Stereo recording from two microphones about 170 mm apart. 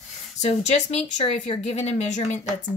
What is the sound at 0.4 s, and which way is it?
Speech, 40° left (ahead or behind).